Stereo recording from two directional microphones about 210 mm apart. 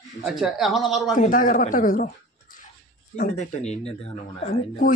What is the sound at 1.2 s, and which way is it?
Speech, 40° left (ahead or behind).